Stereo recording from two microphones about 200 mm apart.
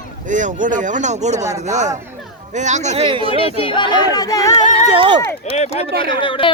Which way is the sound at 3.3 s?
30° left (ahead or behind).